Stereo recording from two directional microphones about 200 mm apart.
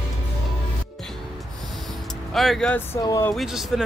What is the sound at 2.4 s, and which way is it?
Speech, centre (ahead or behind).